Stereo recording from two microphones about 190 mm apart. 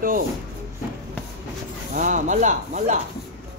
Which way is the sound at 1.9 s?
45° right (ahead or behind).